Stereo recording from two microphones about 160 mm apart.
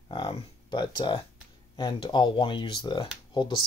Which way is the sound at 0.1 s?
30° left (ahead or behind).